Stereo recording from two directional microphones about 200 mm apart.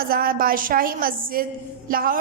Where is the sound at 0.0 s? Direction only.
45° right (ahead or behind).